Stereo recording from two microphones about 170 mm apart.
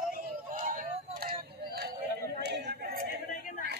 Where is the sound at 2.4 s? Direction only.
75° right (ahead or behind).